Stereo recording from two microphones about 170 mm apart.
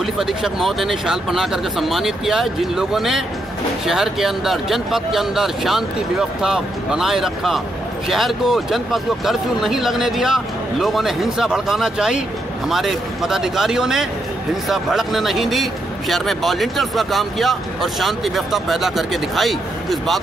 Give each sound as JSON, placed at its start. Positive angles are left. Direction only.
{"t": 0.0, "sound": "a man's voice", "side_deg": 0}